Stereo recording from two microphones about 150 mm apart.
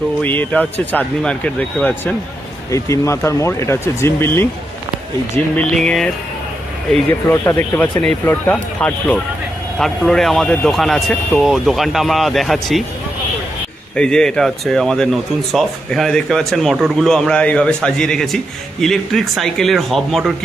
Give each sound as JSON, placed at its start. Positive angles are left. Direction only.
{"t": 0.2, "sound": "speech", "side_deg": 10}
{"t": 2.7, "sound": "speech", "side_deg": 20}
{"t": 5.5, "sound": "speech", "side_deg": 5}
{"t": 7.1, "sound": "speech", "side_deg": 15}
{"t": 13.9, "sound": "speech", "side_deg": 5}